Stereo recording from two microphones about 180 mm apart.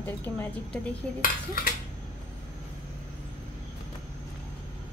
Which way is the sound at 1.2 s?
55° left (ahead or behind).